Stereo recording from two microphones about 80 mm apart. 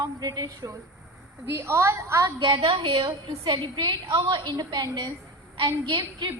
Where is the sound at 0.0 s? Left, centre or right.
Right.